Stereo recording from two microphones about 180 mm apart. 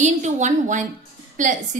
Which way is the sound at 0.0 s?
40° right (ahead or behind).